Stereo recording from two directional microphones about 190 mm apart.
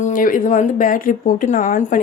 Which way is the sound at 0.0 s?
45° left (ahead or behind).